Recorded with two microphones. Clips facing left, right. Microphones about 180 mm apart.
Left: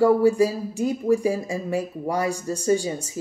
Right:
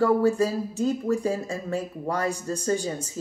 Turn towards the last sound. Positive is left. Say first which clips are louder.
# left 4 dB
turn(degrees=10)  # may be behind; listen again after turning